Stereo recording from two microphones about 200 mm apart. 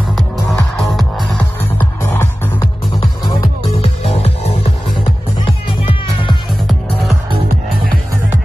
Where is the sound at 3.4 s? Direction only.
30° left (ahead or behind).